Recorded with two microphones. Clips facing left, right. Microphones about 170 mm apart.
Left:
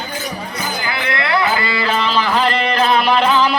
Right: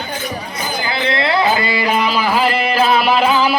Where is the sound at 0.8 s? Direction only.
25° right (ahead or behind); by 3.5 s 5° right (ahead or behind).